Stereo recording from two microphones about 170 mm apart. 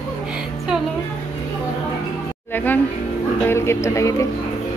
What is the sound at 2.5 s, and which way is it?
A woman's voice, 10° left (ahead or behind).